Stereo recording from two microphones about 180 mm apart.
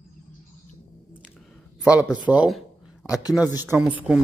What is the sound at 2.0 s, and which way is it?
Speech, 20° left (ahead or behind).